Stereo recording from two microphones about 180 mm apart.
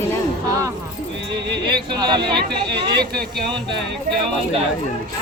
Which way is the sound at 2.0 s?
25° right (ahead or behind).